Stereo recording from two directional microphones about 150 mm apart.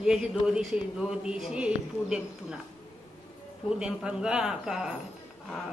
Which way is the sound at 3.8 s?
5° right (ahead or behind).